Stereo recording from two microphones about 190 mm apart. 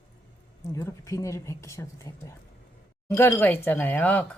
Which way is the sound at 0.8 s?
15° left (ahead or behind).